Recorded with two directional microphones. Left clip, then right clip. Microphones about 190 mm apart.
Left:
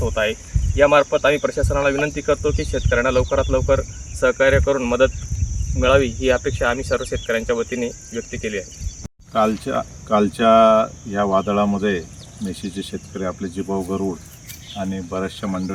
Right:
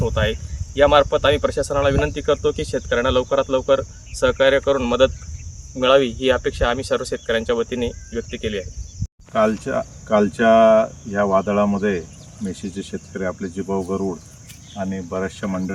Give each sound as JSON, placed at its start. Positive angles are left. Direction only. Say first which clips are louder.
{"t": 0.1, "sound": "speech", "louder": "left 1 dB", "side_deg": -25}
{"t": 9.3, "sound": "speech", "louder": "even", "side_deg": 0}